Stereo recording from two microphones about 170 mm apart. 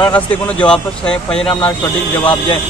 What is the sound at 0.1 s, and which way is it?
Speech, 5° left (ahead or behind).